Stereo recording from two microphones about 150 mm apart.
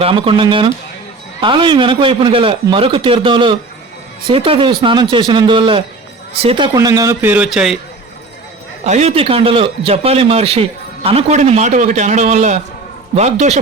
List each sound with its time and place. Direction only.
0.0 s a man's voice: 35° right (ahead or behind)
6.7 s a man's voice: 25° right (ahead or behind); by 7.8 s 5° right (ahead or behind)
8.8 s a man's voice: 50° right (ahead or behind)